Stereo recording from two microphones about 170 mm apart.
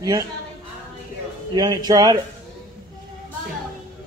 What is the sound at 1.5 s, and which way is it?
Speech, 20° right (ahead or behind).